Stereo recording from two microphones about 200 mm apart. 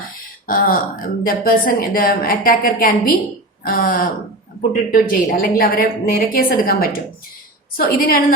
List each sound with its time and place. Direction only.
0.4 s speech: 45° left (ahead or behind)